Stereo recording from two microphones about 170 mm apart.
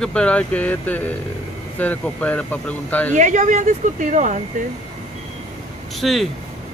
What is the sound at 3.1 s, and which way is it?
Speech, 45° right (ahead or behind).